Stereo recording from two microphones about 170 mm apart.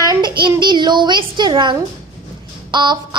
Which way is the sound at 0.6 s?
25° right (ahead or behind).